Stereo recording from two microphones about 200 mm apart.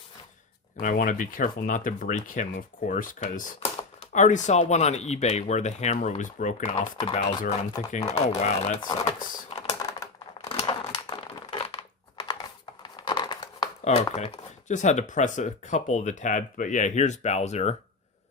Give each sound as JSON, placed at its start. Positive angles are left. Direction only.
{"t": 0.8, "sound": "speech", "side_deg": 40}
{"t": 9.5, "sound": "typing", "side_deg": 20}
{"t": 10.7, "sound": "computer keyboard", "side_deg": 25}
{"t": 13.8, "sound": "speech", "side_deg": 35}